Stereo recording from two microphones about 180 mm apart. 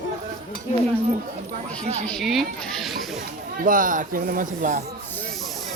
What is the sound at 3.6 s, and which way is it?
Speech, 50° right (ahead or behind).